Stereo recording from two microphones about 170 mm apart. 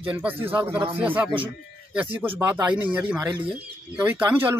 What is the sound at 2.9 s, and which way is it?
Speech, 25° right (ahead or behind).